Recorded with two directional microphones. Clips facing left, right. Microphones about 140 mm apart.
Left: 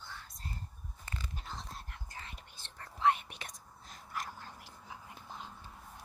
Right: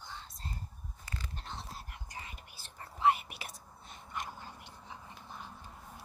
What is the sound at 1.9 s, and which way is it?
Whispering, 15° right (ahead or behind).